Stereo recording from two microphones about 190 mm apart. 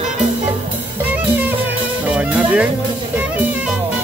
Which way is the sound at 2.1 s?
5° right (ahead or behind).